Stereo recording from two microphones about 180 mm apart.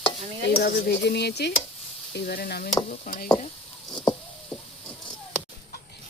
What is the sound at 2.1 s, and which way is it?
Speech, 60° left (ahead or behind).